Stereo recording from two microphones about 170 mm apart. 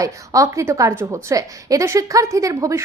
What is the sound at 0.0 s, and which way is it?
A woman's voice, 20° right (ahead or behind).